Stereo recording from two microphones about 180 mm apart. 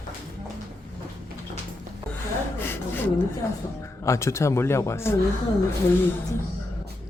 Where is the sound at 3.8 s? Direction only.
15° left (ahead or behind).